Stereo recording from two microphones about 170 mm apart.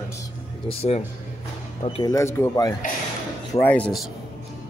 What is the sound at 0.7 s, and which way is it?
Speech, 35° left (ahead or behind).